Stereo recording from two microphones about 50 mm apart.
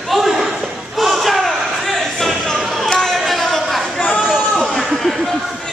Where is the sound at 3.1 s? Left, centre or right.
Centre.